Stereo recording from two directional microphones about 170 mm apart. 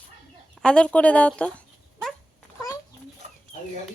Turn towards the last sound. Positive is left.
turn(degrees=40)  # may be behind; listen again after turning